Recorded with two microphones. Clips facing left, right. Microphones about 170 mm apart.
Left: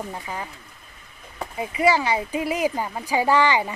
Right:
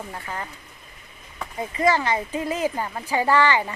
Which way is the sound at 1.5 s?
10° left (ahead or behind).